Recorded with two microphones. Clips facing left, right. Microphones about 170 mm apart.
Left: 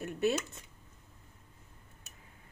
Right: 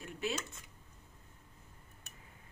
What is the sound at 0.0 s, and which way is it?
Speech, 65° left (ahead or behind).